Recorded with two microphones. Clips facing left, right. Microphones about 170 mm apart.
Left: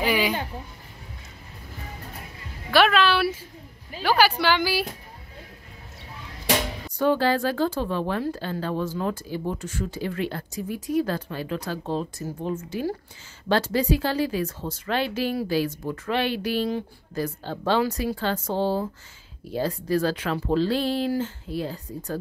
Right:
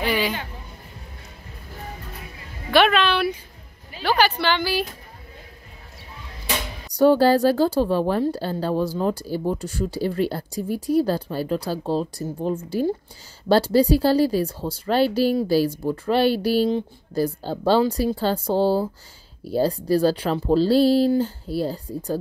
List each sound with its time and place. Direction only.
0.0 s speech: 10° left (ahead or behind)
2.7 s a woman's voice: centre (ahead or behind)
7.0 s speech: 40° right (ahead or behind)